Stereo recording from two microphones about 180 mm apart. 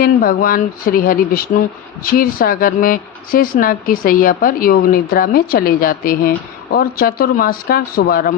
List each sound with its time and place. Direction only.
0.0 s speech: 55° left (ahead or behind)